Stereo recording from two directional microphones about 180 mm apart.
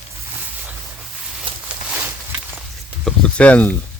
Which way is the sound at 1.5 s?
30° right (ahead or behind).